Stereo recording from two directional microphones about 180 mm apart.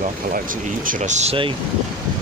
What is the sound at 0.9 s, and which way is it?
Speech, 45° right (ahead or behind).